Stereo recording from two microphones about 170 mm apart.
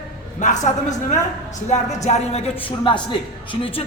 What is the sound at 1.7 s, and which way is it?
A man's voice, 45° left (ahead or behind).